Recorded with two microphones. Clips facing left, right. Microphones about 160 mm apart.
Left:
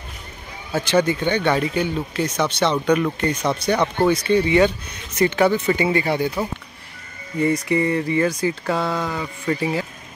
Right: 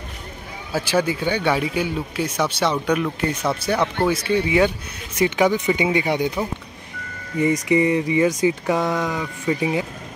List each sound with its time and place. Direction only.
0.7 s speech: 5° right (ahead or behind)
7.3 s speech: 20° right (ahead or behind)